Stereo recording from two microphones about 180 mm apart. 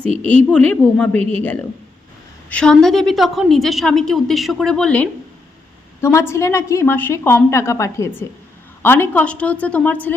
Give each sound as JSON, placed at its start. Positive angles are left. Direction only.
{"t": 0.3, "sound": "a woman's voice", "side_deg": 10}